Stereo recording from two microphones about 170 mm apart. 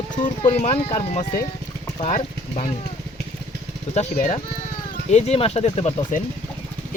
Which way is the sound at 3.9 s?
40° left (ahead or behind).